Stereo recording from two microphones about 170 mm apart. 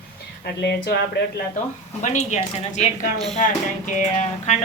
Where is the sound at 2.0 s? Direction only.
45° left (ahead or behind).